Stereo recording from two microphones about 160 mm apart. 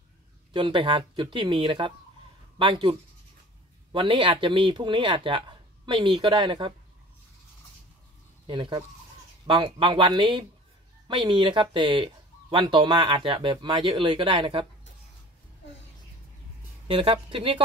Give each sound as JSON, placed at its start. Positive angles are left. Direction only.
{"t": 0.5, "sound": "speech", "side_deg": -30}
{"t": 8.5, "sound": "speech", "side_deg": -30}
{"t": 16.8, "sound": "speech", "side_deg": -35}